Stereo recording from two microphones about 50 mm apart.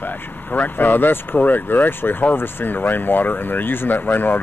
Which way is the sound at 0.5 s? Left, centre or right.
Left.